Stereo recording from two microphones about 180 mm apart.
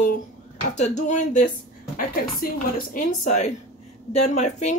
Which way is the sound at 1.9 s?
55° left (ahead or behind).